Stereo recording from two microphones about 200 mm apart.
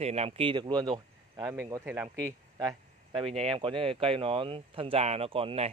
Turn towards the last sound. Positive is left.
turn(degrees=-25)  # may be behind; listen again after turning